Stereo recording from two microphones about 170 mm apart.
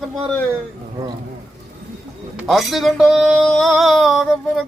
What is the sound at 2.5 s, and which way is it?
Speech, centre (ahead or behind).